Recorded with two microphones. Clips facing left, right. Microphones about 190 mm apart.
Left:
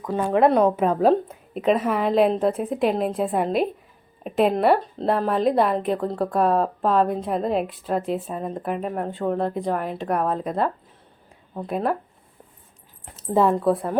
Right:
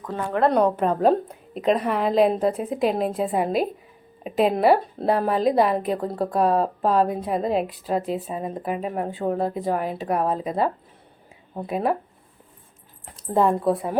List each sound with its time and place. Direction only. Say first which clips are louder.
0.0 s speech: left 3 dB; 15° left (ahead or behind)
0.5 s a woman's voice: left 1 dB; centre (ahead or behind)
13.2 s a woman's voice: left 1 dB; centre (ahead or behind)